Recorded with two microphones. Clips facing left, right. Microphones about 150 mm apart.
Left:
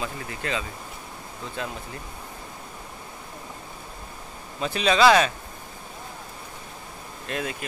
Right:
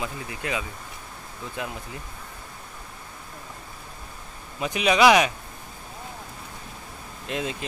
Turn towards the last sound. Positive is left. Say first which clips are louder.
# right 1 dB
turn(degrees=-20)  # may be behind; listen again after turning